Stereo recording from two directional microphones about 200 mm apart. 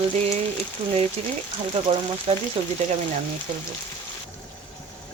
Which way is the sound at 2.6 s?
25° right (ahead or behind).